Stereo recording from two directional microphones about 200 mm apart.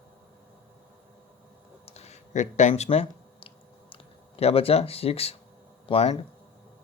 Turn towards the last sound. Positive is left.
turn(degrees=30)  # may be behind; listen again after turning